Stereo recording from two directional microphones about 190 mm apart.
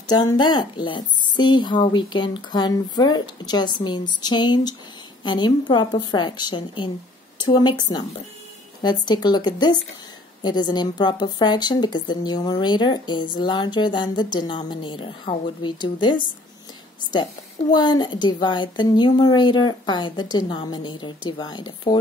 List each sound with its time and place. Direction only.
0.0 s a woman's voice: 20° left (ahead or behind)
8.8 s a woman's voice: 20° left (ahead or behind)